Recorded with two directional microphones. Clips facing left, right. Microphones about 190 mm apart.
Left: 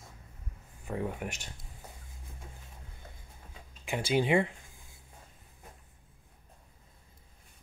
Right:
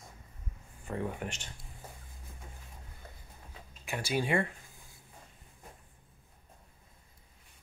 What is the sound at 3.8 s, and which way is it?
Speech, 20° left (ahead or behind).